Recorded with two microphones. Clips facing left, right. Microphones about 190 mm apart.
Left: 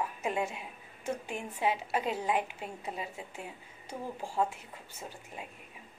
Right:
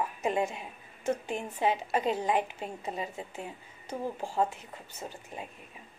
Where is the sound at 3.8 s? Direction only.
40° right (ahead or behind).